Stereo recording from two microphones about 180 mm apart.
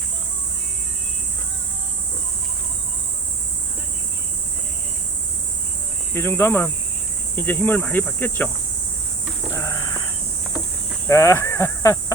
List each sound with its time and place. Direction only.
6.1 s speech: 15° left (ahead or behind)
9.5 s a sound: 15° left (ahead or behind)
11.1 s speech: 15° left (ahead or behind)